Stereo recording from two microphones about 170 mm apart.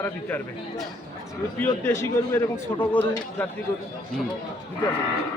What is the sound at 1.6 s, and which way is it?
A man's voice, 15° left (ahead or behind).